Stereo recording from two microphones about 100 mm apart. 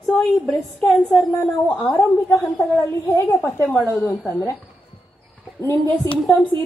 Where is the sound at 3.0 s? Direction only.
20° left (ahead or behind).